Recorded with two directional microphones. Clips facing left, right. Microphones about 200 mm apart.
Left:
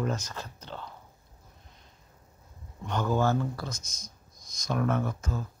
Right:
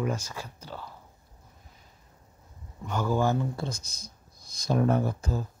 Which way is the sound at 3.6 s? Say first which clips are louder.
Right 4 dB; 30° right (ahead or behind).